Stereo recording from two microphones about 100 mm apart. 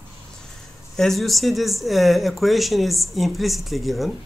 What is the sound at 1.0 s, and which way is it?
Speech, centre (ahead or behind).